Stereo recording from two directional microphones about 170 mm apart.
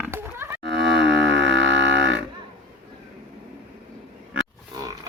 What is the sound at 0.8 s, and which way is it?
Music, 90° right.